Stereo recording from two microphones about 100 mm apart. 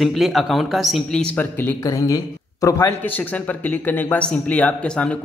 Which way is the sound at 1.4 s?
20° left (ahead or behind).